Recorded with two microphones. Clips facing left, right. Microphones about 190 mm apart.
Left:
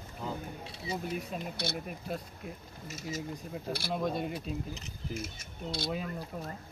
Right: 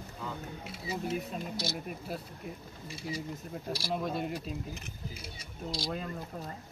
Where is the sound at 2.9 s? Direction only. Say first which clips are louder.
Even; 45° left (ahead or behind).